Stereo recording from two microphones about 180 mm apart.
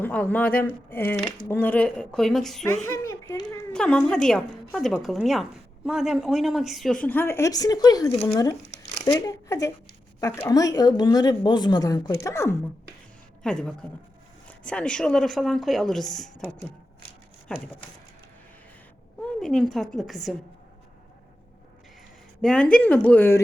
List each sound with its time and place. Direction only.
0.0 s speech: 10° left (ahead or behind)
2.9 s a sound: 15° left (ahead or behind)
3.7 s a woman's voice: 5° left (ahead or behind)
13.4 s speech: 5° left (ahead or behind)
19.4 s speech: 5° left (ahead or behind)
22.4 s speech: 5° left (ahead or behind)